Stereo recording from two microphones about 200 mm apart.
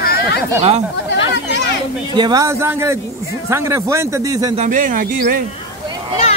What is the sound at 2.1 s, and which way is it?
Speech, 20° right (ahead or behind).